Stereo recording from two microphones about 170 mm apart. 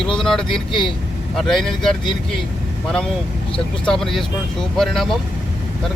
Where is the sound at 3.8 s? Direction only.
5° left (ahead or behind).